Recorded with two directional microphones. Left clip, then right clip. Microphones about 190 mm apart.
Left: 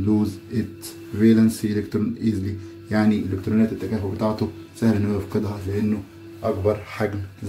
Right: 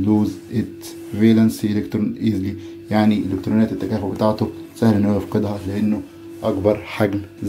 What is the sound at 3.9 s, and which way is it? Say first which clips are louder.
Speech: right 5 dB; 15° right (ahead or behind).